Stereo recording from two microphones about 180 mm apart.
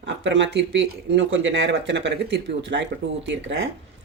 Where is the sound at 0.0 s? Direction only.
85° right.